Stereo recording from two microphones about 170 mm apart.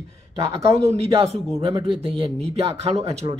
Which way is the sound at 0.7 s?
35° right (ahead or behind).